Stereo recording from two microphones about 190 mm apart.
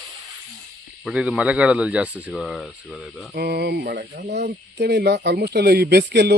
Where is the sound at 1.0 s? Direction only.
5° right (ahead or behind).